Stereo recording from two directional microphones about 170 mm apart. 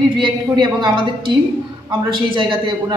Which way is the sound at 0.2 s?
25° right (ahead or behind).